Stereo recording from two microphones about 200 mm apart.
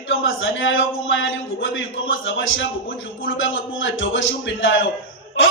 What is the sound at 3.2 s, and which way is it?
A man's voice, 70° left (ahead or behind).